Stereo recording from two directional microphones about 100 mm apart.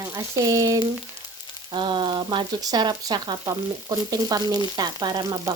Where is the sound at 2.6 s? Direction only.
40° right (ahead or behind).